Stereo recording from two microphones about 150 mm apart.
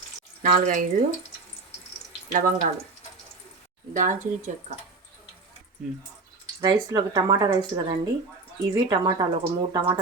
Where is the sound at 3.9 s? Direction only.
55° right (ahead or behind).